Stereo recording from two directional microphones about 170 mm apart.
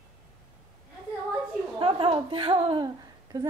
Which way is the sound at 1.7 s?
30° right (ahead or behind).